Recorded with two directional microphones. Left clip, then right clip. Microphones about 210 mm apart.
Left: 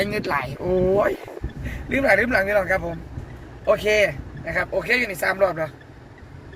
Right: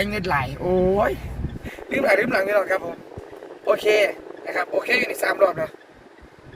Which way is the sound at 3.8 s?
15° right (ahead or behind).